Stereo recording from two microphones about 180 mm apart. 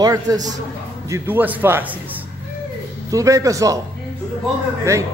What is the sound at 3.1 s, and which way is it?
Speech, 20° right (ahead or behind).